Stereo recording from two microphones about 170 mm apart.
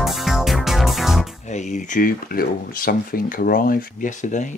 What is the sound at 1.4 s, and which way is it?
Speech, 45° left (ahead or behind).